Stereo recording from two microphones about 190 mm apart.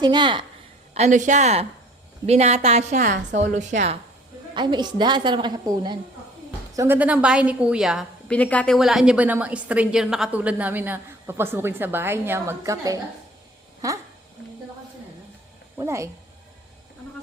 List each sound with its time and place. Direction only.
0.0 s a woman's voice: 25° right (ahead or behind)
0.9 s a woman's voice: 40° right (ahead or behind)
4.5 s a woman's voice: 25° right (ahead or behind)
6.7 s a woman's voice: 10° right (ahead or behind)
8.4 s a woman's voice: 5° left (ahead or behind); by 14.0 s 15° right (ahead or behind)
15.8 s a woman's voice: 15° right (ahead or behind)